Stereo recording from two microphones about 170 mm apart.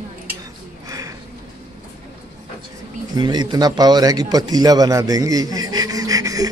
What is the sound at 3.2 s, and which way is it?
Speech, 25° right (ahead or behind).